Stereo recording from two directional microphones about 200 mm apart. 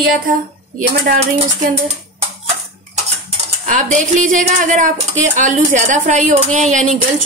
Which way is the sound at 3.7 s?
40° right (ahead or behind).